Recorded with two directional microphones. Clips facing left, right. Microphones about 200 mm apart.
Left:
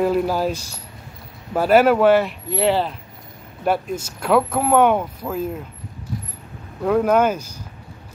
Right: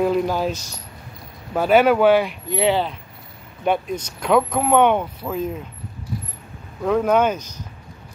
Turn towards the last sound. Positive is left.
turn(degrees=5)  # may be behind; listen again after turning